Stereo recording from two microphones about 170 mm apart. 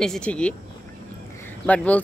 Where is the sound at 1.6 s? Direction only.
10° left (ahead or behind).